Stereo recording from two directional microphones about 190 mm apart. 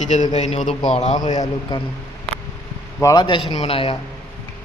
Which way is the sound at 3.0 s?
25° left (ahead or behind).